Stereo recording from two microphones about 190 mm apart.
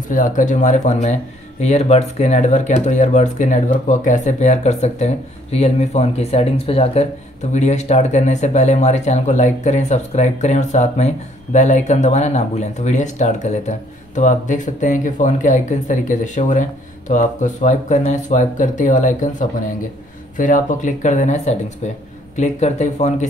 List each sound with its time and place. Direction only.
0.1 s speech: 45° left (ahead or behind)
20.3 s speech: 45° left (ahead or behind)